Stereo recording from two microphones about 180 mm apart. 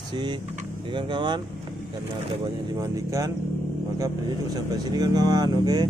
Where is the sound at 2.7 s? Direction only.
15° right (ahead or behind).